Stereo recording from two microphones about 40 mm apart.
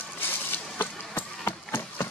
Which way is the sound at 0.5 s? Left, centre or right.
Left.